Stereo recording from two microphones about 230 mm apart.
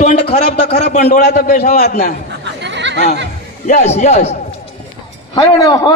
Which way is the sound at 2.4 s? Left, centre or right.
Right.